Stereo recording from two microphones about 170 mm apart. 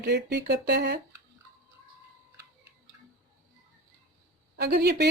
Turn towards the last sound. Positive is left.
turn(degrees=-70)  # may be behind; listen again after turning